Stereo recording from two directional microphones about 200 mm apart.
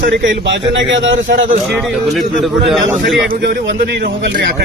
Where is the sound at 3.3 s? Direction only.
50° right (ahead or behind).